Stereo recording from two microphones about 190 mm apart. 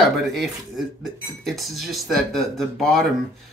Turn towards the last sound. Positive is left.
turn(degrees=0)  # may be behind; listen again after turning